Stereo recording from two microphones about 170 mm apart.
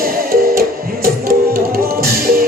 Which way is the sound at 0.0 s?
60° right (ahead or behind).